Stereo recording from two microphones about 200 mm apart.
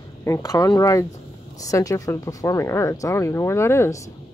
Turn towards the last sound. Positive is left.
turn(degrees=15)  # may be behind; listen again after turning